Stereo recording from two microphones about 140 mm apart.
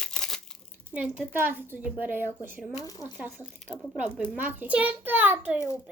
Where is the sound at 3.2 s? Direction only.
15° right (ahead or behind).